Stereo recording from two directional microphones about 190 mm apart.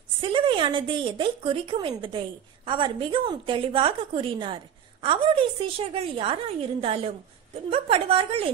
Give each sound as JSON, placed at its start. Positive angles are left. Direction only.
{"t": 0.2, "sound": "a woman's voice", "side_deg": -25}